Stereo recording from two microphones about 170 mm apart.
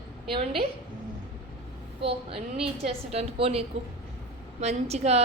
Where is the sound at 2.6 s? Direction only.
35° right (ahead or behind).